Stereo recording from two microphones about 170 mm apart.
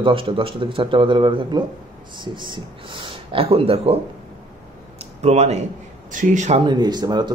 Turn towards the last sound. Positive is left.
turn(degrees=-25)  # may be behind; listen again after turning